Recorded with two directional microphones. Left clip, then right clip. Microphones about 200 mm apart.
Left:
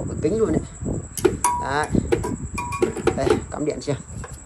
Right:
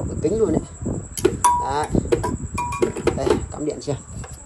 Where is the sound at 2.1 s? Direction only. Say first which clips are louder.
Right 2 dB; centre (ahead or behind).